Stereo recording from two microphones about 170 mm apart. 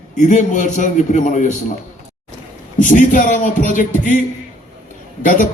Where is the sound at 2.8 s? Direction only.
50° left (ahead or behind).